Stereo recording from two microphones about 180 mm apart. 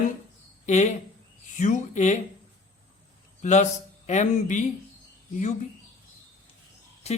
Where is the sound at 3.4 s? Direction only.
40° left (ahead or behind).